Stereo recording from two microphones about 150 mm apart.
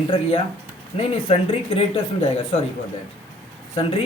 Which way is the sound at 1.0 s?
40° left (ahead or behind).